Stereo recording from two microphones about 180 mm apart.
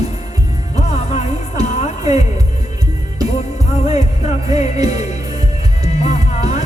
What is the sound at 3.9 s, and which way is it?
Music, 35° left (ahead or behind).